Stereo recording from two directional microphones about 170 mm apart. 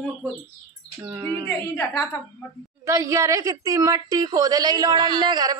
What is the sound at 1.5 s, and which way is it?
Speech, 15° left (ahead or behind).